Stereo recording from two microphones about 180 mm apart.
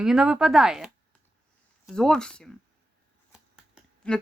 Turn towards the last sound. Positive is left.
turn(degrees=0)  # may be behind; listen again after turning